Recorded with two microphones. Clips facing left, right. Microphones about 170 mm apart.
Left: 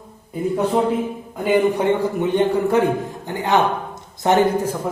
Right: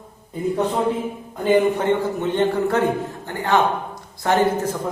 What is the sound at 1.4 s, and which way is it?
A man's voice, 15° left (ahead or behind).